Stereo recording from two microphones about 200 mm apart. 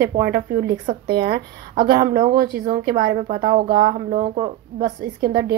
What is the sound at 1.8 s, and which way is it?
Speech, 20° right (ahead or behind).